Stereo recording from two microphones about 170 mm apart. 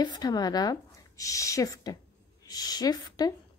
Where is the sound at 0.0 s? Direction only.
25° left (ahead or behind).